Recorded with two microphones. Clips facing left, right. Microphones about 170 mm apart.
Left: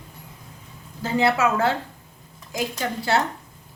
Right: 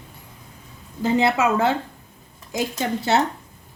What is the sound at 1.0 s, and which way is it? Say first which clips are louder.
A woman's voice: right 2 dB; 20° right (ahead or behind).